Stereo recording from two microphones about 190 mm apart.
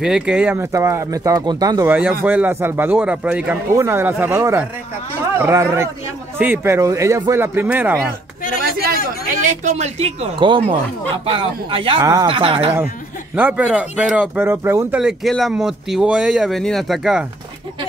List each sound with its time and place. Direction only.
0.0 s speech: 5° right (ahead or behind)
9.5 s speech: 35° right (ahead or behind)
13.4 s speech: 10° right (ahead or behind)